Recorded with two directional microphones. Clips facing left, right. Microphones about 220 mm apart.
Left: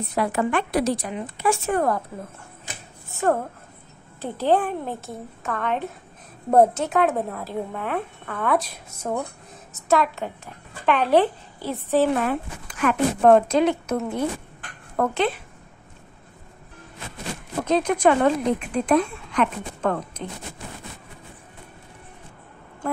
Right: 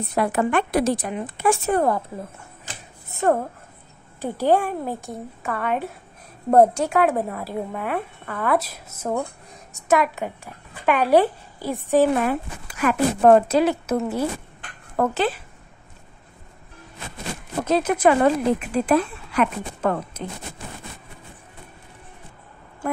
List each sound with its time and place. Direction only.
0.1 s a woman's voice: 50° right (ahead or behind)
1.7 s a woman's voice: 25° right (ahead or behind)
3.2 s a woman's voice: 15° right (ahead or behind)
9.8 s a woman's voice: 15° right (ahead or behind)
17.6 s a woman's voice: 5° right (ahead or behind)